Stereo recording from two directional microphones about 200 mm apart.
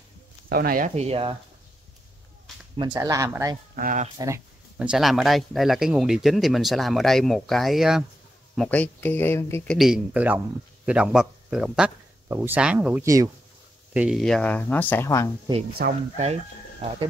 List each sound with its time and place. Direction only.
0.5 s speech: 45° right (ahead or behind); by 1.3 s 30° right (ahead or behind)
2.8 s speech: 20° right (ahead or behind)
3.7 s speech: 40° right (ahead or behind)
4.7 s speech: 5° right (ahead or behind); by 9.8 s 10° left (ahead or behind)
9.8 s speech: centre (ahead or behind)
13.9 s speech: 5° right (ahead or behind); by 15.2 s 15° left (ahead or behind)
15.8 s speech: 50° right (ahead or behind)